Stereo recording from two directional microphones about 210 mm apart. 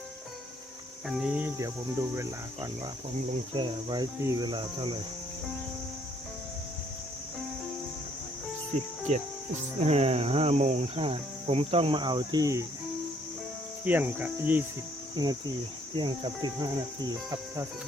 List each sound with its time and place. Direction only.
1.0 s speech: 5° right (ahead or behind); by 4.9 s 25° right (ahead or behind)
9.1 s speech: 35° right (ahead or behind); by 12.6 s 15° right (ahead or behind)
13.8 s speech: 10° right (ahead or behind)
15.1 s cricket: 20° right (ahead or behind)
16.0 s speech: 20° right (ahead or behind)